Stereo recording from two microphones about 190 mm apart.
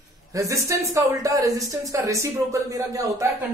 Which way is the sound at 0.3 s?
15° right (ahead or behind).